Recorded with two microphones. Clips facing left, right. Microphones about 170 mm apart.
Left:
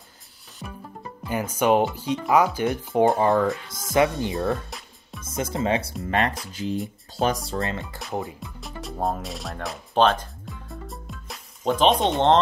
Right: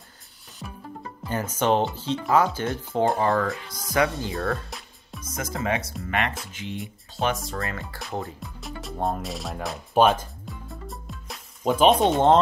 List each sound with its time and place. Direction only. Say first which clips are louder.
0.6 s music: left 1 dB; 15° left (ahead or behind)
1.3 s speech: left 2 dB; 15° left (ahead or behind)
4.6 s music: even; centre (ahead or behind)
5.2 s speech: left 4 dB; 25° left (ahead or behind)
7.5 s speech: left 4 dB; 20° left (ahead or behind)
8.4 s speech: even; centre (ahead or behind)
10.4 s music: even; centre (ahead or behind)